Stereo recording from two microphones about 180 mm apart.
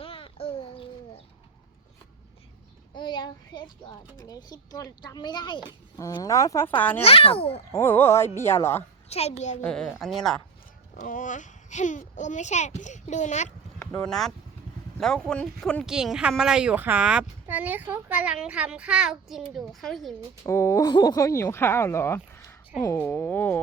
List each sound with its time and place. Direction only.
0.0 s a sound: 30° left (ahead or behind)
2.9 s a sound: 25° left (ahead or behind)
4.2 s speech: 20° left (ahead or behind)
7.0 s a child's voice: 30° left (ahead or behind)
7.7 s speech: 10° left (ahead or behind)
9.0 s a child's voice: 35° left (ahead or behind)
9.6 s speech: 5° left (ahead or behind)
10.9 s a child's voice: 45° left (ahead or behind)
13.7 s a child's voice: 5° left (ahead or behind)
20.4 s speech: 15° left (ahead or behind)